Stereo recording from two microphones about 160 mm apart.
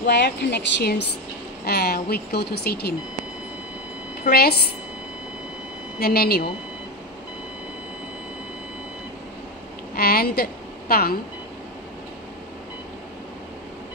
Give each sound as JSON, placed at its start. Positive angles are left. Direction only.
{"t": 0.0, "sound": "speech", "side_deg": 90}
{"t": 1.7, "sound": "speech", "side_deg": 80}
{"t": 4.2, "sound": "a woman's voice", "side_deg": 75}
{"t": 5.9, "sound": "speech", "side_deg": 75}
{"t": 9.9, "sound": "a woman's voice", "side_deg": 70}